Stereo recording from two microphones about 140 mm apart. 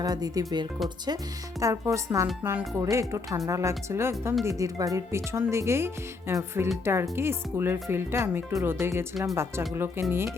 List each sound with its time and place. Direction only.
0.0 s speech: 25° right (ahead or behind)